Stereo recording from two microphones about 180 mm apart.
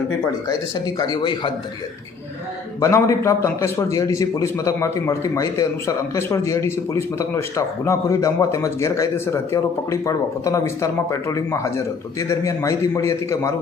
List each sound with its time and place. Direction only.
0.9 s speech: 25° left (ahead or behind)
2.8 s a man's voice: 15° left (ahead or behind)